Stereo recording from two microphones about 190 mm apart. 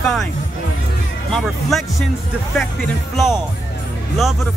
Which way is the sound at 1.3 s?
Centre (ahead or behind).